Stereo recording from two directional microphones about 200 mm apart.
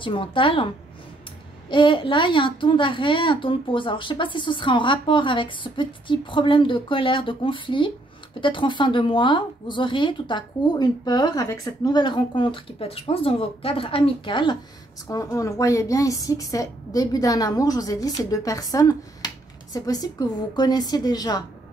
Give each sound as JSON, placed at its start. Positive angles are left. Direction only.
{"t": 0.0, "sound": "a woman's voice", "side_deg": 25}
{"t": 1.7, "sound": "a woman's voice", "side_deg": 25}